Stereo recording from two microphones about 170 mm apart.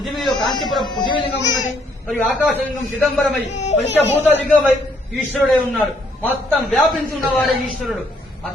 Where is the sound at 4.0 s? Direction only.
10° left (ahead or behind).